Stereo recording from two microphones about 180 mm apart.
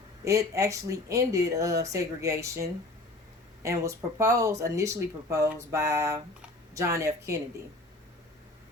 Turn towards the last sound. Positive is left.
turn(degrees=-15)  # may be behind; listen again after turning